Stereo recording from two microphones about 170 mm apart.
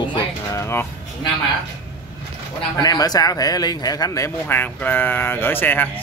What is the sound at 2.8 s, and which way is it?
Speech, 25° left (ahead or behind).